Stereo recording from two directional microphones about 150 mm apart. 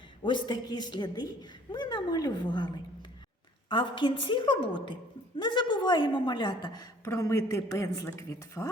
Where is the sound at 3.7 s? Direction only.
35° left (ahead or behind).